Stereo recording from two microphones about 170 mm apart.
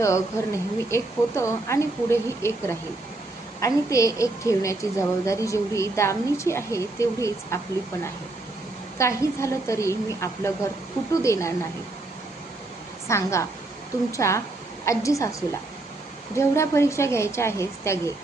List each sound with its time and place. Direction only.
0.0 s a woman's voice: 15° left (ahead or behind)
9.0 s a woman's voice: 15° left (ahead or behind)
13.1 s a woman's voice: 15° left (ahead or behind)